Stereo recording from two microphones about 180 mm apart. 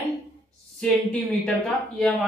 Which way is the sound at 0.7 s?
5° left (ahead or behind).